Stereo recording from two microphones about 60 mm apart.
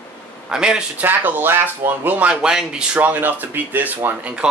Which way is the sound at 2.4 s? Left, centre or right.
Centre.